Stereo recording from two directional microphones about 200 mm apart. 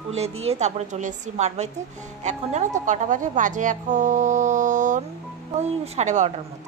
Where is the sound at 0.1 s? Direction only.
30° right (ahead or behind).